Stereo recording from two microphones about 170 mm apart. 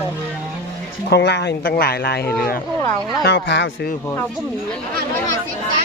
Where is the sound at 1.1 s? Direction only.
85° left; by 2.2 s 65° left (ahead or behind).